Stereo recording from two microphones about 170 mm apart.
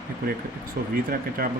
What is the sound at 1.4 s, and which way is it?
Speech, 60° right (ahead or behind).